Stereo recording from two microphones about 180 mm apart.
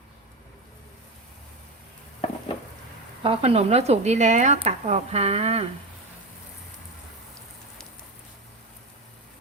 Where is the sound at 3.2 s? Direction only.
30° right (ahead or behind).